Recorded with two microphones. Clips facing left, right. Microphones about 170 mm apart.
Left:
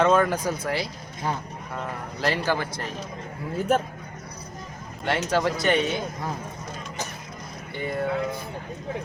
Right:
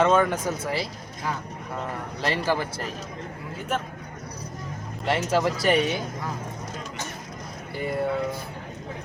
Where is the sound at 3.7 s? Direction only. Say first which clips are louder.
Left 6 dB; 40° left (ahead or behind).